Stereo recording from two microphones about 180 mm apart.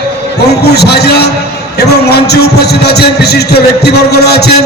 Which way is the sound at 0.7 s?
65° left (ahead or behind).